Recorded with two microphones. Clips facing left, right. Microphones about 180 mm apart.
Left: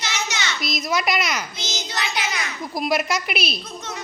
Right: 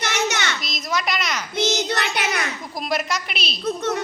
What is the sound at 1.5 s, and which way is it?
Child singing, 65° right (ahead or behind).